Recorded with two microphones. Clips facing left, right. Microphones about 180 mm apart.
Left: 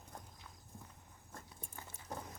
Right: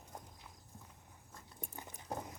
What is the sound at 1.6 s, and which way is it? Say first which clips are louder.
Dog: right 3 dB; 20° right (ahead or behind).